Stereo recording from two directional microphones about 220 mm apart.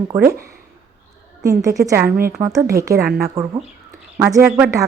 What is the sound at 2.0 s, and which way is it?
Speech, 40° right (ahead or behind).